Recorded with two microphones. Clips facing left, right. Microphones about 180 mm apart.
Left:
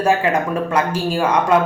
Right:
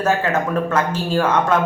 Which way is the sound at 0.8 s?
10° left (ahead or behind).